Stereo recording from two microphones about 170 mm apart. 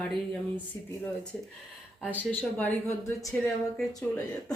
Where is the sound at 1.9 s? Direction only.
5° right (ahead or behind).